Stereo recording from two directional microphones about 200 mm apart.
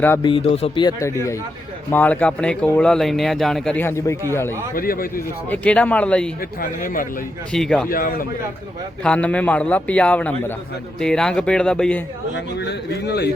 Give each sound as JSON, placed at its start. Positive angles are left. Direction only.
{"t": 0.2, "sound": "a man's voice", "side_deg": 25}
{"t": 4.7, "sound": "speech", "side_deg": 45}
{"t": 5.5, "sound": "speech", "side_deg": 5}
{"t": 6.6, "sound": "speech", "side_deg": 45}
{"t": 7.5, "sound": "speech", "side_deg": 0}
{"t": 7.9, "sound": "speech", "side_deg": 45}
{"t": 9.0, "sound": "speech", "side_deg": 5}
{"t": 12.5, "sound": "a man's voice", "side_deg": 55}